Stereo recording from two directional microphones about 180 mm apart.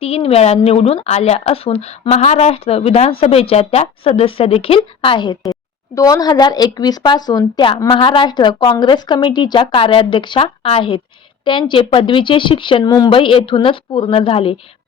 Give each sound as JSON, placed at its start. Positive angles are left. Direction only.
{"t": 0.0, "sound": "a woman's voice", "side_deg": 35}